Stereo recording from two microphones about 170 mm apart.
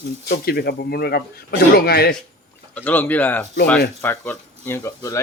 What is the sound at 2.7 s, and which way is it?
Speech, 10° left (ahead or behind).